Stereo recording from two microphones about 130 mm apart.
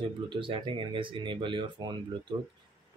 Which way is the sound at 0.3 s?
40° right (ahead or behind).